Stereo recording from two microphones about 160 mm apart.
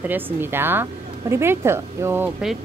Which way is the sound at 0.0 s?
10° right (ahead or behind).